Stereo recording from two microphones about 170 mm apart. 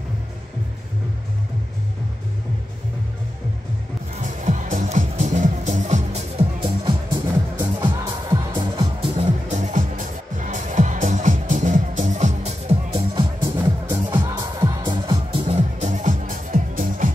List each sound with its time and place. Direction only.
4.2 s music: 45° right (ahead or behind); by 9.1 s 25° right (ahead or behind)
9.1 s music: 40° right (ahead or behind)
13.6 s music: 15° right (ahead or behind)
15.4 s music: 40° right (ahead or behind)